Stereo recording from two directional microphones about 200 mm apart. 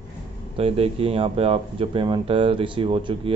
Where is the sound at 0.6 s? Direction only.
30° right (ahead or behind).